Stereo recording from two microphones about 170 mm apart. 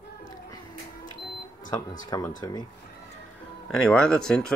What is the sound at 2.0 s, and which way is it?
Speech, 20° left (ahead or behind).